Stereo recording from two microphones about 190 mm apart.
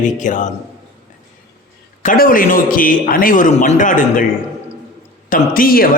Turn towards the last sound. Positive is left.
turn(degrees=50)  # may be behind; listen again after turning